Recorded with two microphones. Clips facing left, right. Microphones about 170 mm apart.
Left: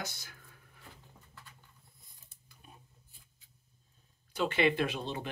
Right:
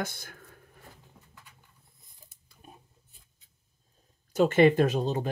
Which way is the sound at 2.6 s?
40° right (ahead or behind).